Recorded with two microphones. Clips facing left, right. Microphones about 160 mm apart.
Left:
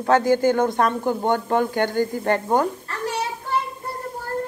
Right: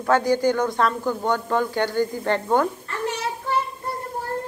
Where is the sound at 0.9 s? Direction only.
20° left (ahead or behind).